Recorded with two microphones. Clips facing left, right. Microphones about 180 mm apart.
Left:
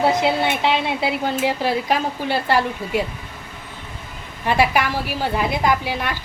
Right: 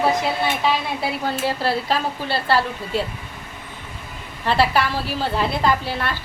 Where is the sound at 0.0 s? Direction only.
20° left (ahead or behind).